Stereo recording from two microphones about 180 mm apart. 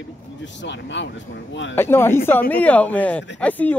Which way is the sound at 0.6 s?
85° left.